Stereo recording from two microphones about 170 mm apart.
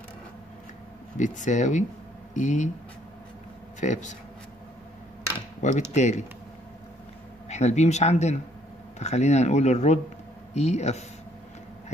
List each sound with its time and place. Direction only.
1.1 s speech: 45° left (ahead or behind)
3.8 s speech: 45° left (ahead or behind)
5.6 s speech: 45° left (ahead or behind)
7.4 s a man's voice: 40° left (ahead or behind)